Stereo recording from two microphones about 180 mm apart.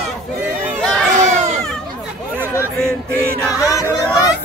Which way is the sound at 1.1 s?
45° right (ahead or behind).